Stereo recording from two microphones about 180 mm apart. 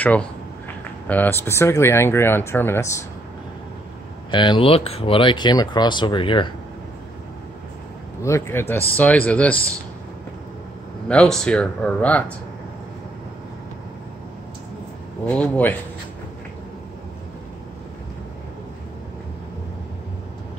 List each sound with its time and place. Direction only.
0.0 s speech: 10° left (ahead or behind)
4.3 s speech: 25° left (ahead or behind)
8.2 s speech: 15° left (ahead or behind)
11.1 s speech: 5° left (ahead or behind)
15.2 s speech: 5° left (ahead or behind)